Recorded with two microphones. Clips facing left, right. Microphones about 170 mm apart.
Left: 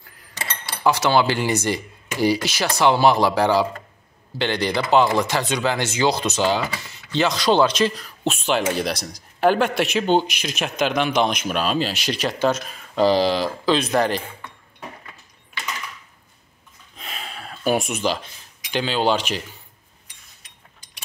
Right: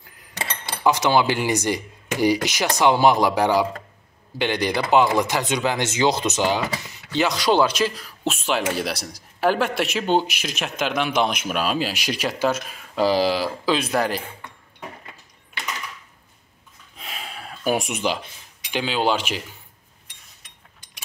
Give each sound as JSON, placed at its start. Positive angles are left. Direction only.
{"t": 0.4, "sound": "cutlery", "side_deg": -20}
{"t": 2.8, "sound": "speech", "side_deg": -15}
{"t": 16.9, "sound": "gasp", "side_deg": -10}
{"t": 18.7, "sound": "speech", "side_deg": -5}